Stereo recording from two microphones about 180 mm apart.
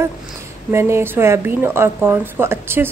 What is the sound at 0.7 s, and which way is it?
A woman's voice, 15° right (ahead or behind).